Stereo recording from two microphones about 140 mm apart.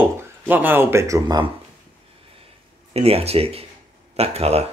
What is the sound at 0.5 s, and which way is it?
Speech, 15° right (ahead or behind).